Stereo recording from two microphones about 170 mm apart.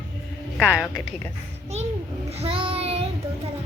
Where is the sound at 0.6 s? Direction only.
5° right (ahead or behind).